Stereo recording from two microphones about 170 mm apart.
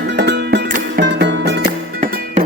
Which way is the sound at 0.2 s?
80° right.